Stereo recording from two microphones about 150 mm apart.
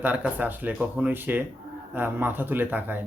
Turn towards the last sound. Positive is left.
turn(degrees=-10)  # may be behind; listen again after turning